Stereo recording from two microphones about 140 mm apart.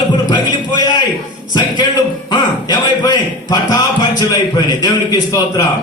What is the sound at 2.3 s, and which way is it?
A man's voice, 30° left (ahead or behind).